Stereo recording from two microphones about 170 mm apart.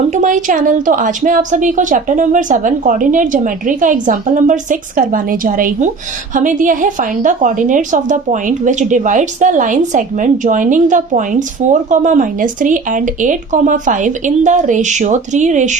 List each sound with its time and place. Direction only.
0.1 s a woman's voice: 45° right (ahead or behind)